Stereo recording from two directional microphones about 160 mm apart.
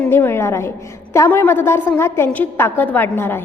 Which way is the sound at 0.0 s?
15° left (ahead or behind).